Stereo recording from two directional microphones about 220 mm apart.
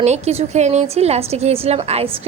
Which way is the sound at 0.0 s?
30° right (ahead or behind).